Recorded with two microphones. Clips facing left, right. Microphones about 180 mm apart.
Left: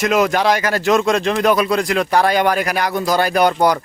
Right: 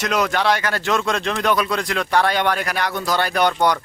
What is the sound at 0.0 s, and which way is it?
Speech, 10° left (ahead or behind).